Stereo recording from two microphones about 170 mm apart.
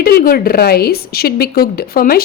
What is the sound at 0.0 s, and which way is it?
A woman's voice, 60° left (ahead or behind).